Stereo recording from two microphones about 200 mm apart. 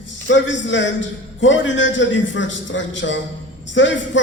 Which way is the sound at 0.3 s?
65° left (ahead or behind).